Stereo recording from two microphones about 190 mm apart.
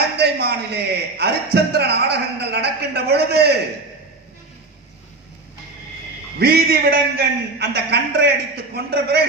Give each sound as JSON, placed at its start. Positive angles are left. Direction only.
{"t": 0.2, "sound": "a man's voice", "side_deg": -60}
{"t": 6.4, "sound": "a man's voice", "side_deg": -55}